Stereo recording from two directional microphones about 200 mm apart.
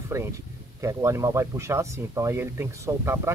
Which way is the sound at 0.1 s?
15° right (ahead or behind).